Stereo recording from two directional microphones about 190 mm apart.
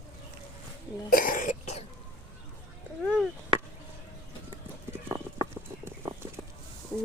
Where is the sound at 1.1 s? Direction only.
45° left (ahead or behind).